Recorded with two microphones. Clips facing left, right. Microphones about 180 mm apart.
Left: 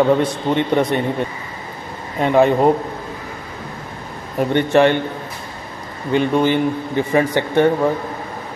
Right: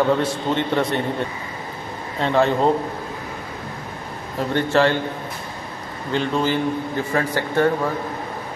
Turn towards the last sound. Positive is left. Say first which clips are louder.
# left 4 dB
turn(degrees=20)  # may be behind; listen again after turning